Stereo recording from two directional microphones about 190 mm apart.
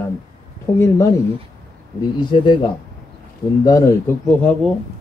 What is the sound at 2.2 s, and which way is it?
Speech, 25° left (ahead or behind).